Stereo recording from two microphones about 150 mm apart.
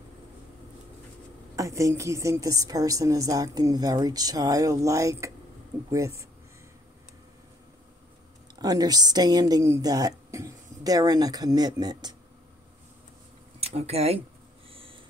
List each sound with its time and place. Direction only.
1.6 s a woman's voice: 20° right (ahead or behind)
8.5 s speech: 25° right (ahead or behind)
13.6 s speech: 45° right (ahead or behind)
14.7 s a sound: 35° right (ahead or behind)